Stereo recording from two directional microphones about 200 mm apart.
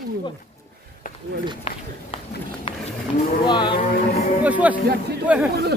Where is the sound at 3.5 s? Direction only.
20° left (ahead or behind).